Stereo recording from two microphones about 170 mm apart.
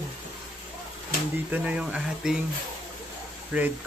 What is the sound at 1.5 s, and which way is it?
Speech, 5° right (ahead or behind).